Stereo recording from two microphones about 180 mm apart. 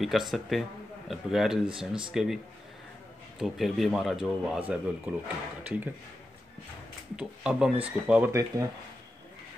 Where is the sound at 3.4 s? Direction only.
Centre (ahead or behind).